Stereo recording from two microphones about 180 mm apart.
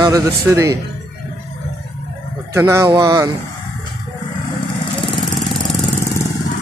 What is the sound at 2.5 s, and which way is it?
Speech, 15° right (ahead or behind).